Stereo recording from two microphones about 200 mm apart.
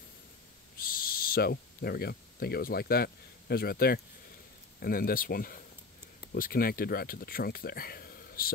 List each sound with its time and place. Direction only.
0.7 s speech: 45° left (ahead or behind)